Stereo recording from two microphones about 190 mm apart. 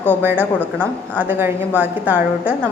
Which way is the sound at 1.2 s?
10° right (ahead or behind).